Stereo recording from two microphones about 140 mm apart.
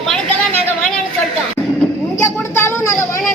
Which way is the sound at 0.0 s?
5° left (ahead or behind).